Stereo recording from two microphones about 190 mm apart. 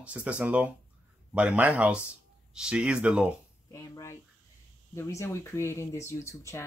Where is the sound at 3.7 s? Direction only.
15° left (ahead or behind).